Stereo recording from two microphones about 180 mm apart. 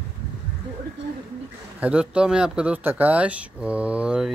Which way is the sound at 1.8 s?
5° right (ahead or behind).